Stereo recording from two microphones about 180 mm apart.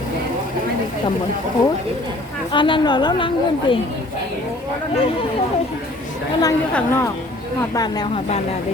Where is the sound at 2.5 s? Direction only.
25° left (ahead or behind).